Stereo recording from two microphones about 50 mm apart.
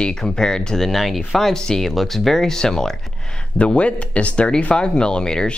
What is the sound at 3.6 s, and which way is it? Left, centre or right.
Speech, left.